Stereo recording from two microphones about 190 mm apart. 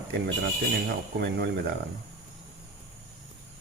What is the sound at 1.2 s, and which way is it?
Speech, 60° right (ahead or behind).